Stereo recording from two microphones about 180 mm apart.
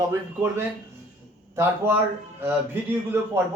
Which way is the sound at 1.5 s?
15° right (ahead or behind).